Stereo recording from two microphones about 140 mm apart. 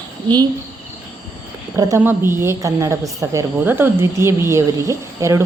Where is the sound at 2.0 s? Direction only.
15° right (ahead or behind).